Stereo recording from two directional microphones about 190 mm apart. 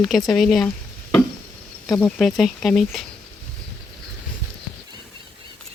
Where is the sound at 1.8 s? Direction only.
15° left (ahead or behind).